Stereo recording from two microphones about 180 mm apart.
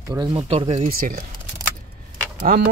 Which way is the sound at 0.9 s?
55° right (ahead or behind).